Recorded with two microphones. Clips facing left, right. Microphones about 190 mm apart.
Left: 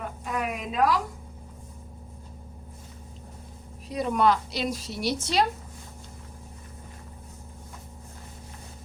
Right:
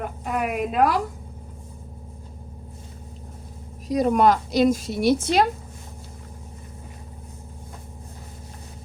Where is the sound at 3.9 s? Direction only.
40° right (ahead or behind).